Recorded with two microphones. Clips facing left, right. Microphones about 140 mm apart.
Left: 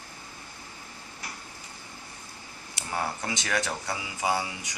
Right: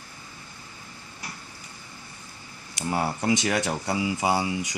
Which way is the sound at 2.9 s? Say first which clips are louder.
Right 7 dB; 25° right (ahead or behind).